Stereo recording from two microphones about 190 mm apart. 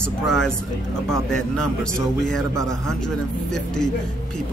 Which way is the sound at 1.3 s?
5° left (ahead or behind).